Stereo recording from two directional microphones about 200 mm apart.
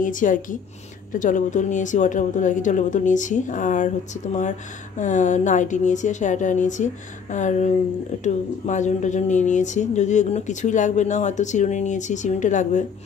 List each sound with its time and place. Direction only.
0.0 s a woman's voice: 40° left (ahead or behind)